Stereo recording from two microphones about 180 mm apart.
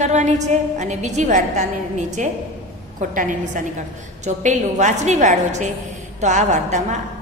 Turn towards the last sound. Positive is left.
turn(degrees=-40)  # may be behind; listen again after turning